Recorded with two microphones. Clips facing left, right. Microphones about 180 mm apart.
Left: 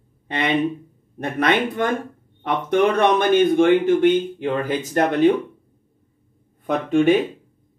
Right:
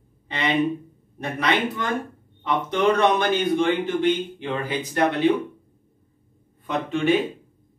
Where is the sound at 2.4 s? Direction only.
55° left (ahead or behind).